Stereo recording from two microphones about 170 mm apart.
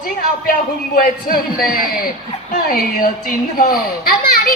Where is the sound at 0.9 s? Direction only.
55° left (ahead or behind).